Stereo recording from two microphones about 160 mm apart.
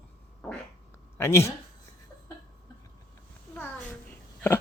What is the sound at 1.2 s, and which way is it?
Speech, 15° left (ahead or behind).